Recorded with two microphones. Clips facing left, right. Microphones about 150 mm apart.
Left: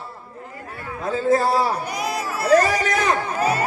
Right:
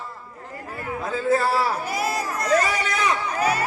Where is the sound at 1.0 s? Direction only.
35° left (ahead or behind).